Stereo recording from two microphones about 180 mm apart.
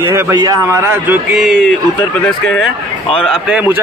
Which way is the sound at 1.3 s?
Centre (ahead or behind).